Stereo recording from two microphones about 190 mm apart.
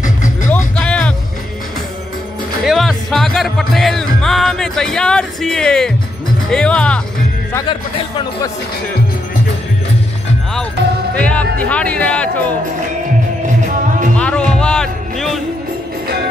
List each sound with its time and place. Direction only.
0.0 s music: 40° left (ahead or behind)
0.7 s music: 5° left (ahead or behind)
2.6 s music: centre (ahead or behind)
6.5 s speech: 5° left (ahead or behind)
11.1 s speech: 5° left (ahead or behind)
14.1 s music: 5° left (ahead or behind)